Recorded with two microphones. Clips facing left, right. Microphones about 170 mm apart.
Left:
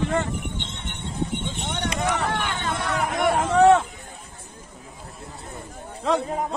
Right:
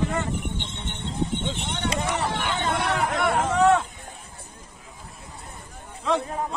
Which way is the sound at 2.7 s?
70° right (ahead or behind).